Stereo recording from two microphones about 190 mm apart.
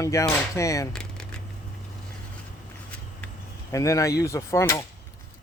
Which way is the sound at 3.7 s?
15° left (ahead or behind).